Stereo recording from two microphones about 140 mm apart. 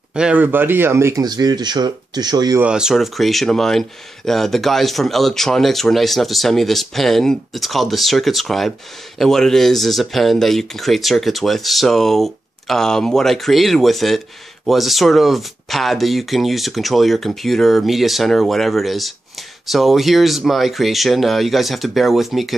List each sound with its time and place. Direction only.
0.1 s speech: 10° right (ahead or behind); by 2.6 s 30° right (ahead or behind)
2.6 s speech: 5° right (ahead or behind)